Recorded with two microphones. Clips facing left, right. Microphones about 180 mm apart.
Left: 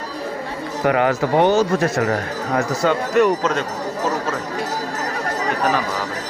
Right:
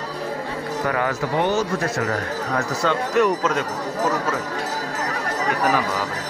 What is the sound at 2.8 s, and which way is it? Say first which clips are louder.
Speech: left 3 dB; 10° left (ahead or behind).